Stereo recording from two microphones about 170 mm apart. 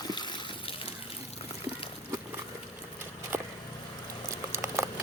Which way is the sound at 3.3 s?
15° right (ahead or behind).